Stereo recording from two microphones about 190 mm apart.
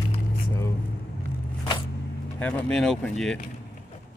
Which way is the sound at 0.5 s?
15° left (ahead or behind).